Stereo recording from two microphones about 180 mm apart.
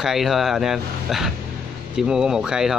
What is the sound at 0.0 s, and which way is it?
Speech, centre (ahead or behind).